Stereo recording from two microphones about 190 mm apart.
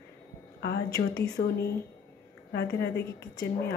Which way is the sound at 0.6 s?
60° left (ahead or behind).